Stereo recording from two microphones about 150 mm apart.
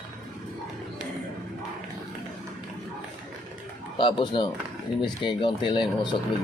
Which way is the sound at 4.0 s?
35° left (ahead or behind).